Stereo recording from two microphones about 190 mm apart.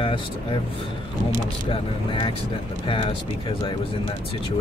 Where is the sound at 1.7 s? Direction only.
25° left (ahead or behind).